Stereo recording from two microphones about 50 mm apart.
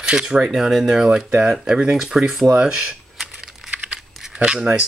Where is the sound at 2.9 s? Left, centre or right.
Centre.